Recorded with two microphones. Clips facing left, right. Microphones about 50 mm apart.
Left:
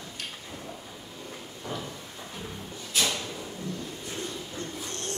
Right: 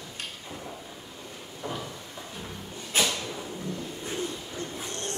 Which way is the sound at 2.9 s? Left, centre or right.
Right.